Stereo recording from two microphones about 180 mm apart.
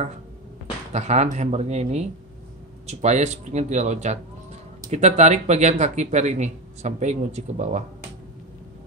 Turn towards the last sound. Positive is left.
turn(degrees=-40)  # may be behind; listen again after turning